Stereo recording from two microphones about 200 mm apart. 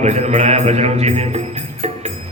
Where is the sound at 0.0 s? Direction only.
35° right (ahead or behind).